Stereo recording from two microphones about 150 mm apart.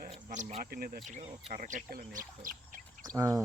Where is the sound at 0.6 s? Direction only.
90° right.